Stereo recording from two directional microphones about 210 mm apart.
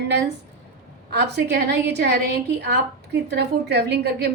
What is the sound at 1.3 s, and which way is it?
A woman's voice, 55° right (ahead or behind).